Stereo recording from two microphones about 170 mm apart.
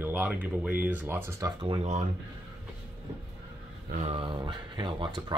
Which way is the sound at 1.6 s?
35° right (ahead or behind).